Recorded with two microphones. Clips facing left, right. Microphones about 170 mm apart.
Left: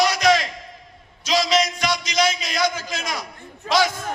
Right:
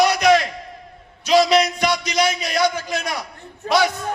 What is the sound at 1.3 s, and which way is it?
Music, 60° right (ahead or behind).